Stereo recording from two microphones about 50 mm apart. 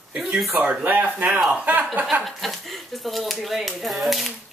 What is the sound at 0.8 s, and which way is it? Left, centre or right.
Speech, right.